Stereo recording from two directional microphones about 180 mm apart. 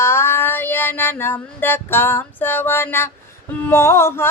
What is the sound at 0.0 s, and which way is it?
Music, 15° left (ahead or behind).